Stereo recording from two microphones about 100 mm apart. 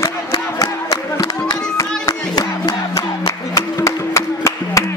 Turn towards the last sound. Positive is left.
turn(degrees=30)  # may be behind; listen again after turning